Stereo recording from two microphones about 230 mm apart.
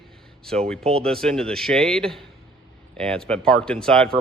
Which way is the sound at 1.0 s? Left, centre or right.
Centre.